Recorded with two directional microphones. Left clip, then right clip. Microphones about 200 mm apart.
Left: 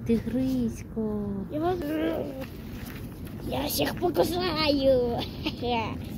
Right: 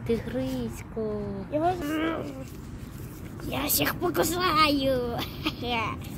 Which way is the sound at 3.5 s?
60° right (ahead or behind).